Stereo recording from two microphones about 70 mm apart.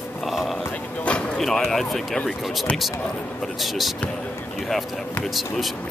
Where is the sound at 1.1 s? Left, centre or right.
Centre.